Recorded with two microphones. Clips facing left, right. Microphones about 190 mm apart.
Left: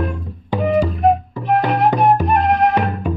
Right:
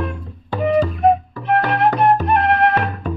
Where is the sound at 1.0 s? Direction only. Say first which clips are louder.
Even; centre (ahead or behind).